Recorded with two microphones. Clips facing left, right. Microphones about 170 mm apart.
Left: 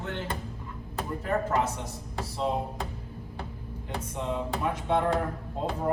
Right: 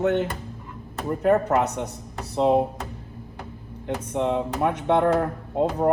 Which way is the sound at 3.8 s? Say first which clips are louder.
Right 8 dB; 65° right (ahead or behind).